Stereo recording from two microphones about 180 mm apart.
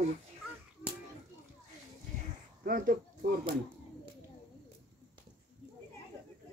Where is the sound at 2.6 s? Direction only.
50° right (ahead or behind).